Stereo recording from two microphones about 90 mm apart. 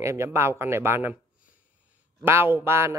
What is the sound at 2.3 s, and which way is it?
Speech, 25° right (ahead or behind).